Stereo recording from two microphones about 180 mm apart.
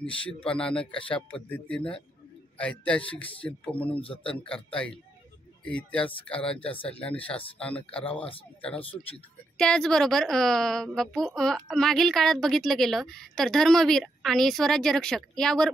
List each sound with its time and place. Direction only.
0.3 s a woman's voice: 5° left (ahead or behind)
4.0 s speech: 30° left (ahead or behind)
4.4 s a woman's voice: 5° left (ahead or behind)
9.6 s a woman's voice: 5° left (ahead or behind)